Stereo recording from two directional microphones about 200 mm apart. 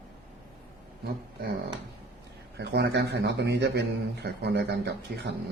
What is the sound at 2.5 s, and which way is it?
A man's voice, 55° right (ahead or behind).